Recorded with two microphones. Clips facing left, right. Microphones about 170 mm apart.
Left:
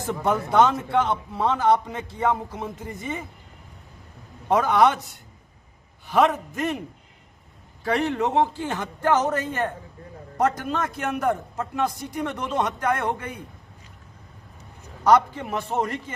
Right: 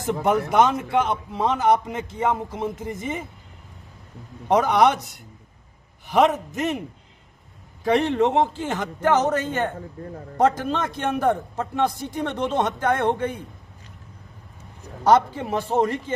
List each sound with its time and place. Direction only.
0.1 s a man's voice: 20° right (ahead or behind)
4.4 s a man's voice: 15° right (ahead or behind)
6.1 s a man's voice: 20° right (ahead or behind)
7.9 s a man's voice: 20° right (ahead or behind)
15.0 s a man's voice: 25° right (ahead or behind)